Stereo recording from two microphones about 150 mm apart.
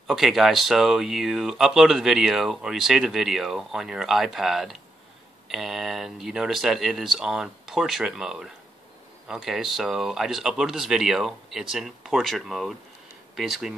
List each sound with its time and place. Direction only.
0.0 s speech: centre (ahead or behind)